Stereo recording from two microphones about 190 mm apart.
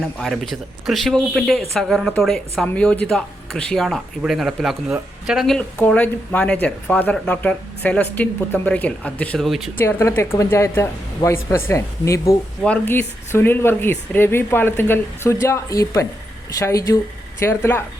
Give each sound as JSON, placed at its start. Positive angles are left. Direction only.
{"t": 0.2, "sound": "a woman's voice", "side_deg": 0}
{"t": 9.7, "sound": "a woman's voice", "side_deg": 15}